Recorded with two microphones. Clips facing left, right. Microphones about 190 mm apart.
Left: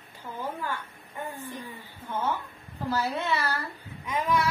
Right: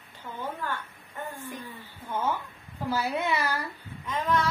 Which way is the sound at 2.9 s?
10° right (ahead or behind).